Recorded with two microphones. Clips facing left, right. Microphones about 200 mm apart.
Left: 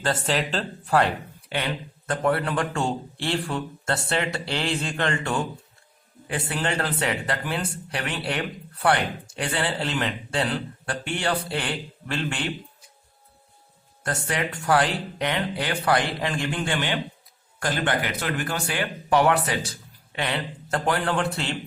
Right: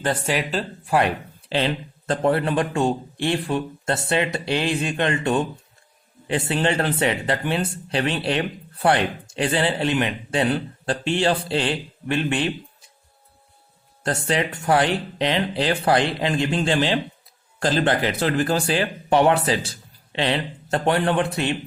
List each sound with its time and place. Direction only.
0.0 s speech: 15° right (ahead or behind)
1.5 s speech: 30° right (ahead or behind)
14.0 s speech: 25° right (ahead or behind)